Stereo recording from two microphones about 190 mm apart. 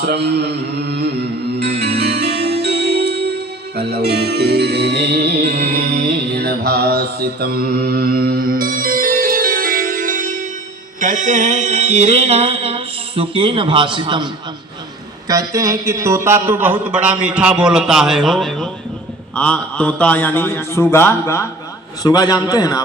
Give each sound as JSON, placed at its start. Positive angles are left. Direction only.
{"t": 0.0, "sound": "music", "side_deg": -60}
{"t": 11.0, "sound": "mantra", "side_deg": -40}
{"t": 15.3, "sound": "a man's voice", "side_deg": -15}